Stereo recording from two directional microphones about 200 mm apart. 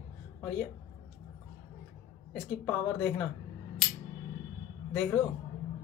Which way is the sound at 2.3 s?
5° left (ahead or behind).